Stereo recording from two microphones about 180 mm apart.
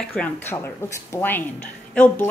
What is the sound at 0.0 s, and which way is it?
A woman's voice, 5° left (ahead or behind).